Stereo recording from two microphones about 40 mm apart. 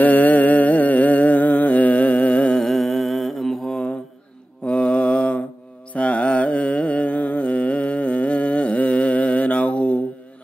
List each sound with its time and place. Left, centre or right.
0.0 s music: left
2.6 s mantra: centre
4.6 s mantra: left
5.9 s carnatic music: left